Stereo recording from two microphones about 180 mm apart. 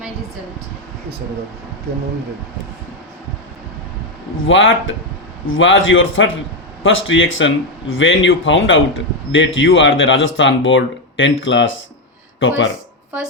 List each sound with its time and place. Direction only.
4.4 s speech: 90° left